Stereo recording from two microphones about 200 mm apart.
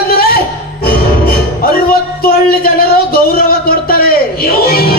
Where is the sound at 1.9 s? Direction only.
50° left (ahead or behind).